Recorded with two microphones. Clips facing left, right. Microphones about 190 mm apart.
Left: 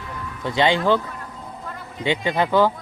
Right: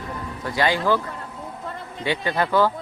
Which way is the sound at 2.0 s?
15° left (ahead or behind).